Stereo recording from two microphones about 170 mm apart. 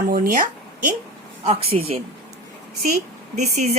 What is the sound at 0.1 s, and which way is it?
Speech, 55° right (ahead or behind).